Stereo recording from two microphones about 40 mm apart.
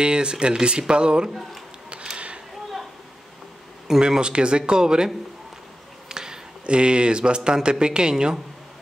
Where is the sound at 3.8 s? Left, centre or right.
Centre.